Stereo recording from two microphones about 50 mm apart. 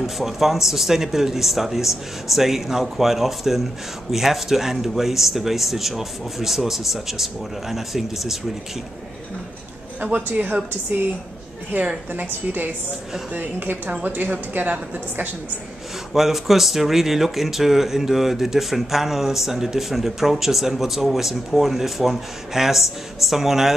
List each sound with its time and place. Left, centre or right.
0.0 s speech: centre
9.9 s speech: right
16.1 s speech: centre